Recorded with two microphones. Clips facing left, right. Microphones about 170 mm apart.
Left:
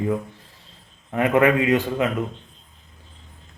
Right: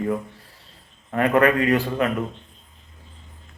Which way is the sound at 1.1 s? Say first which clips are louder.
Even; 20° left (ahead or behind).